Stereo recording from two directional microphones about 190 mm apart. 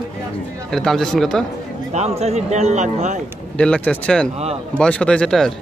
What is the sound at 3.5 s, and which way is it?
Speech, 5° left (ahead or behind).